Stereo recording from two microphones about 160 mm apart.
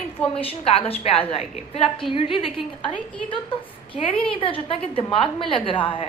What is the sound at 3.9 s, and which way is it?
A woman's voice, 35° left (ahead or behind).